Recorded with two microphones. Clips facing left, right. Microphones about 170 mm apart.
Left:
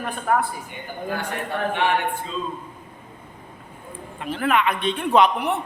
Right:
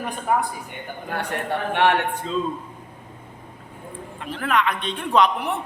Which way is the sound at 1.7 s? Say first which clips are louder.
Right 4 dB; 70° right (ahead or behind).